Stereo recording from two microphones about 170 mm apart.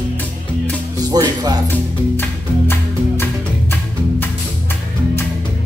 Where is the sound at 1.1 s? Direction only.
20° right (ahead or behind).